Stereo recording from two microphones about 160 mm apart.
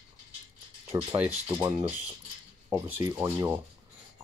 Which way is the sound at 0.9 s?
15° right (ahead or behind).